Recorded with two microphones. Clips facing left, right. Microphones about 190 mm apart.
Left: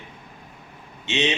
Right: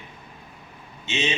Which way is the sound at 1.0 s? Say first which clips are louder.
Left 3 dB; 70° left (ahead or behind).